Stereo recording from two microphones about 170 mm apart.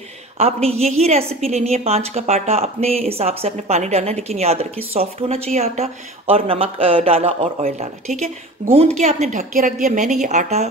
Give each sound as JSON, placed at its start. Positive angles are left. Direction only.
{"t": 0.4, "sound": "speech", "side_deg": -35}
{"t": 8.6, "sound": "a woman's voice", "side_deg": -50}